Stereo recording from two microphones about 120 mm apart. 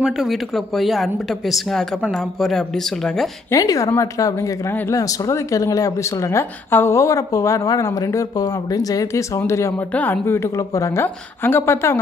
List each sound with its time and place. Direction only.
0.0 s speech: centre (ahead or behind)
3.5 s a woman's voice: 30° left (ahead or behind)